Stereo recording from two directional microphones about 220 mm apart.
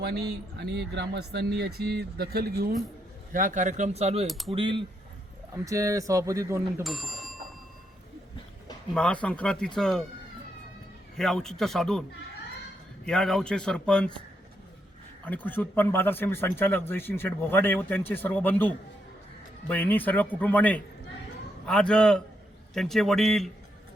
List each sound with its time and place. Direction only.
0.0 s speech: 50° right (ahead or behind); by 4.3 s 30° right (ahead or behind)
4.3 s speech: centre (ahead or behind)
4.5 s speech: 25° right (ahead or behind)
6.8 s speech: centre (ahead or behind)
9.0 s speech: 5° left (ahead or behind)
11.2 s speech: centre (ahead or behind)
13.1 s speech: 5° left (ahead or behind)
15.2 s a man's voice: 10° left (ahead or behind)